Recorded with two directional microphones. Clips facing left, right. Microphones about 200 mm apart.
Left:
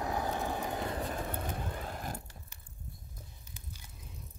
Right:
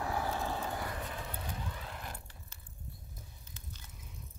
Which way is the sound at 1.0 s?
45° left (ahead or behind).